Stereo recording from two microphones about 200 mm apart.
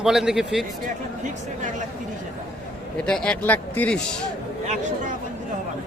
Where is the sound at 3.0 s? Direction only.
5° left (ahead or behind).